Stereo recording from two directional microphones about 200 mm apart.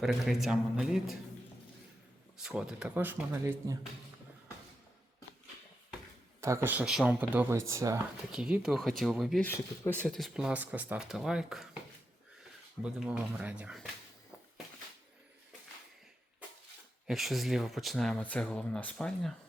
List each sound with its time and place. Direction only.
0.0 s speech: centre (ahead or behind)
2.4 s speech: 5° right (ahead or behind)
6.4 s speech: 15° right (ahead or behind)
8.3 s speech: 5° right (ahead or behind)
12.8 s speech: 5° right (ahead or behind)
17.1 s speech: centre (ahead or behind)